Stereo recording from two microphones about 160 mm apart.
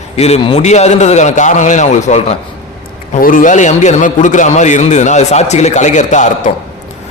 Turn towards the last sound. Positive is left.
turn(degrees=50)  # may be behind; listen again after turning